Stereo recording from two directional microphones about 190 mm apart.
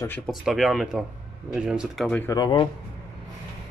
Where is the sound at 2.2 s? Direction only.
20° left (ahead or behind).